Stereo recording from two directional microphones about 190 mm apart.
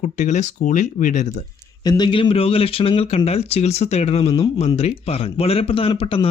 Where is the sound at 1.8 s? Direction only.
20° left (ahead or behind).